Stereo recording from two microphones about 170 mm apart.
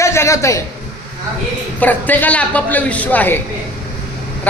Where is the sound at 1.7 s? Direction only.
10° left (ahead or behind).